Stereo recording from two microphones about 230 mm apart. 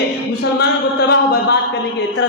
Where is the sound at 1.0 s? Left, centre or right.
Left.